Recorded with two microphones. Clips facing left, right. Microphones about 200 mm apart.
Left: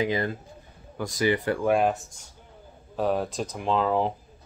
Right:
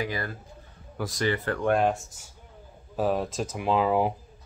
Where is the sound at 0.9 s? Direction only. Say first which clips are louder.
Even; centre (ahead or behind).